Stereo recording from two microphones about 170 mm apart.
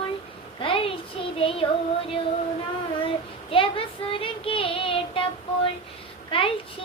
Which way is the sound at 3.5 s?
30° left (ahead or behind).